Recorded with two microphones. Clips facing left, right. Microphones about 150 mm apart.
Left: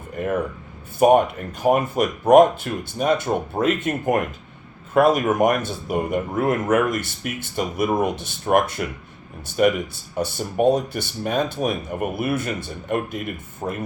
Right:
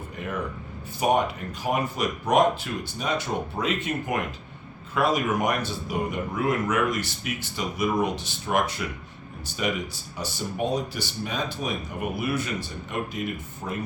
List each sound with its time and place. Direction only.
0.2 s speech: 50° left (ahead or behind)